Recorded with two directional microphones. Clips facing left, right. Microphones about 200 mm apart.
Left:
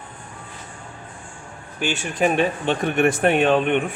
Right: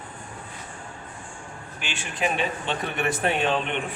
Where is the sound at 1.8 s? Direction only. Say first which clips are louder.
Left 8 dB; 45° left (ahead or behind).